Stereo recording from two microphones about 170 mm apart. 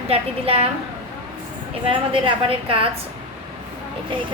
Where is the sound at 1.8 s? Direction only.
30° right (ahead or behind).